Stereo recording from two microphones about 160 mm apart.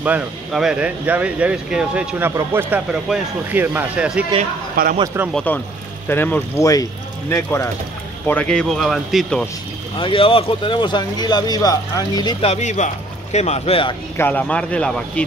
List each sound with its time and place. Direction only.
0.0 s speech: 5° right (ahead or behind)
2.9 s speech: 5° right (ahead or behind)
4.8 s speech: 65° right (ahead or behind)
5.3 s speech: 10° left (ahead or behind)
9.9 s speech: 35° left (ahead or behind)
12.4 s speech: 40° left (ahead or behind)
14.1 s speech: 10° left (ahead or behind)